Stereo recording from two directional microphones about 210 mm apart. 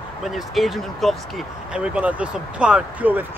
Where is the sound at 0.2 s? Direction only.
Centre (ahead or behind).